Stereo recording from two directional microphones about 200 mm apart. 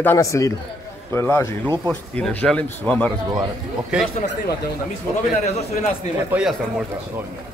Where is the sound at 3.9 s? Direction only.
5° right (ahead or behind).